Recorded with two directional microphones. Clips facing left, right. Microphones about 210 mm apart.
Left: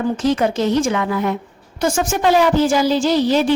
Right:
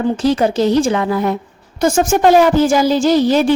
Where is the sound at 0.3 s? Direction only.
35° right (ahead or behind).